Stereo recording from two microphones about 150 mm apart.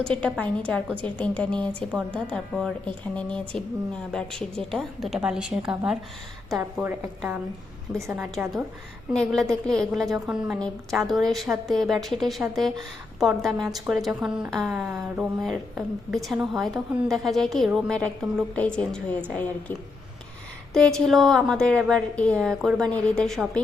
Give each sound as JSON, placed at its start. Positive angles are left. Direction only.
{"t": 0.0, "sound": "a woman's voice", "side_deg": 5}
{"t": 7.9, "sound": "a woman's voice", "side_deg": -20}
{"t": 8.2, "sound": "a woman's voice", "side_deg": -5}
{"t": 20.7, "sound": "a woman's voice", "side_deg": 5}